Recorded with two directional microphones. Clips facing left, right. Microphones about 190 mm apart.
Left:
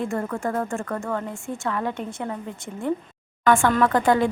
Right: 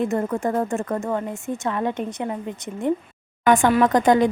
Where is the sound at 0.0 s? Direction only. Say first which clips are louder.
Right 4 dB; 20° right (ahead or behind).